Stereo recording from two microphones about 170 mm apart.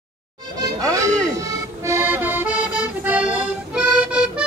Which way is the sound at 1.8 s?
15° right (ahead or behind).